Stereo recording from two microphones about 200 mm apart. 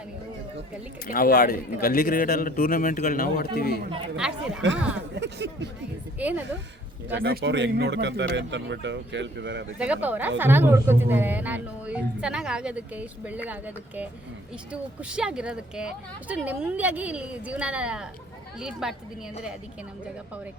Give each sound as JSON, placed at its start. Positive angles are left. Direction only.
{"t": 1.0, "sound": "a man's voice", "side_deg": 45}
{"t": 4.2, "sound": "speech", "side_deg": -5}
{"t": 5.1, "sound": "speech", "side_deg": -60}
{"t": 6.1, "sound": "a woman's voice", "side_deg": -10}
{"t": 7.1, "sound": "speech", "side_deg": -60}
{"t": 9.7, "sound": "a woman's voice", "side_deg": -5}